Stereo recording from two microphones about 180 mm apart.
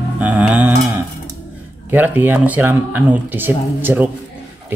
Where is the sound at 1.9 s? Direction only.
10° right (ahead or behind).